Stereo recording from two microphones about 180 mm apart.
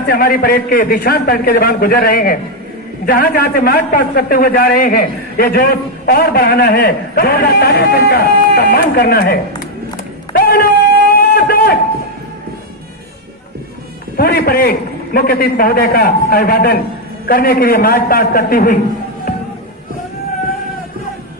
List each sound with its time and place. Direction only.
0.0 s a man's voice: 55° left (ahead or behind)
10.3 s a sound: 55° left (ahead or behind)
14.1 s a man's voice: 55° left (ahead or behind)